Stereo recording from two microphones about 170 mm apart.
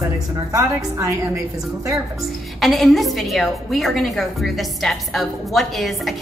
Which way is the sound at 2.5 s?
Centre (ahead or behind).